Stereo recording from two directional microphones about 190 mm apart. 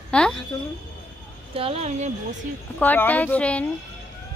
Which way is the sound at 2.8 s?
10° left (ahead or behind).